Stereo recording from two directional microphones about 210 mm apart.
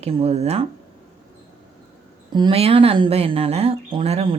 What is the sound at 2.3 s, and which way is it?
Speech, 25° right (ahead or behind).